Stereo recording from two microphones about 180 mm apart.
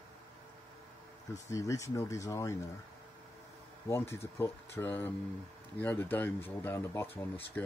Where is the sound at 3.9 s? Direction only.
15° left (ahead or behind).